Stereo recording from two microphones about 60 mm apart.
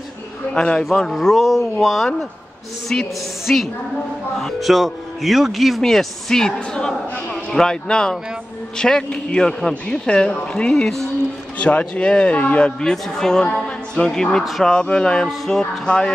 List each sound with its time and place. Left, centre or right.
0.6 s a man's voice: centre
1.4 s speech: centre
2.9 s a man's voice: centre
11.5 s a man's voice: left
12.8 s a man's voice: centre
13.7 s music: centre
14.6 s a man's voice: centre